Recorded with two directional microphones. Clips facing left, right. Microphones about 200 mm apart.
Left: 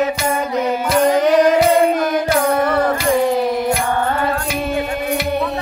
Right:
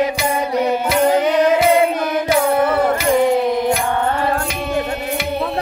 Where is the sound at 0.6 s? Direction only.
5° right (ahead or behind).